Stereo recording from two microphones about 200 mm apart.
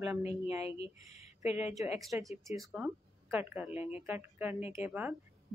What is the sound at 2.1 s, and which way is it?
Speech, 15° right (ahead or behind).